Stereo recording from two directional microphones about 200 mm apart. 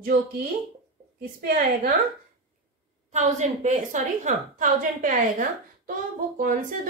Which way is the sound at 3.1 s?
35° right (ahead or behind).